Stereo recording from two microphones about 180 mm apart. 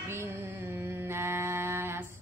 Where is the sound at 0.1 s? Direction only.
15° right (ahead or behind).